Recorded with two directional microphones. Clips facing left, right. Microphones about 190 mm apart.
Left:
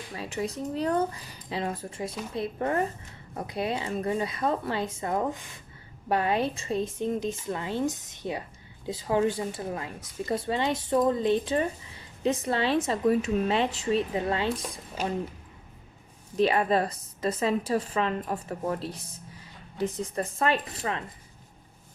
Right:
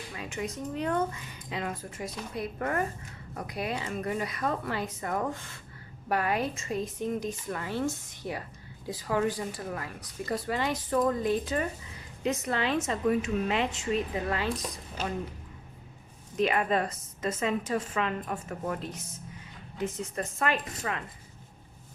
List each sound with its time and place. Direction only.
0.2 s a woman's voice: 35° left (ahead or behind)
16.4 s speech: 35° left (ahead or behind)